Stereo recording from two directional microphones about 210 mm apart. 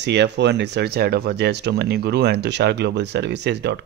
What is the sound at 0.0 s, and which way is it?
Speech, 55° right (ahead or behind).